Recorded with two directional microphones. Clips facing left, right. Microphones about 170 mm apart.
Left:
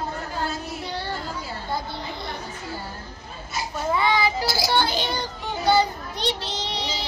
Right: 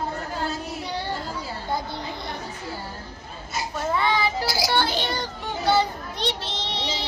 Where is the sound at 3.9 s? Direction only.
Centre (ahead or behind).